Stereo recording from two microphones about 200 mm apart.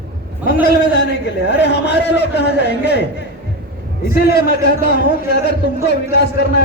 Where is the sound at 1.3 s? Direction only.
60° left (ahead or behind).